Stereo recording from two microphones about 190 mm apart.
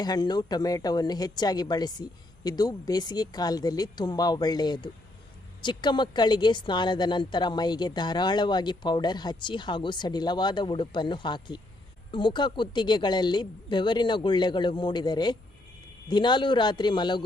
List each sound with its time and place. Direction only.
0.0 s a woman's voice: 20° left (ahead or behind)